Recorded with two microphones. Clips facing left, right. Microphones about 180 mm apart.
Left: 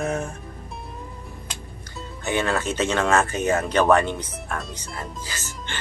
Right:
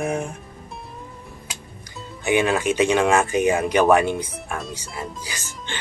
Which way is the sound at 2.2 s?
15° right (ahead or behind).